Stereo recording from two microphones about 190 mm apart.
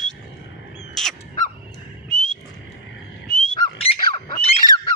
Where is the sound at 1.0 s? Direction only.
Centre (ahead or behind).